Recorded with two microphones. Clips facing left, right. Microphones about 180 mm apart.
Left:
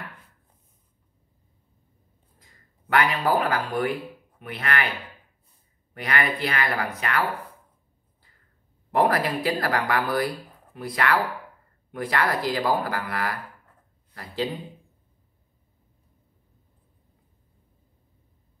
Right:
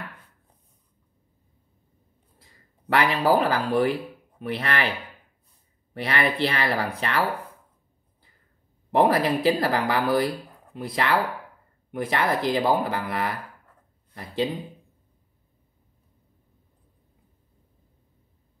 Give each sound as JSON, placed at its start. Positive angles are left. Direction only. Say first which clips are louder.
{"t": 2.9, "sound": "speech", "louder": "right 2 dB", "side_deg": -35}
{"t": 5.9, "sound": "speech", "louder": "right 2 dB", "side_deg": -30}
{"t": 8.9, "sound": "speech", "louder": "right 2 dB", "side_deg": -25}